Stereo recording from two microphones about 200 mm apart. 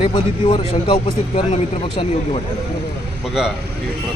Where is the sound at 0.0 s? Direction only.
25° left (ahead or behind).